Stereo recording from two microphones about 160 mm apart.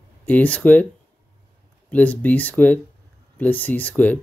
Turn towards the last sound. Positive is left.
turn(degrees=10)  # may be behind; listen again after turning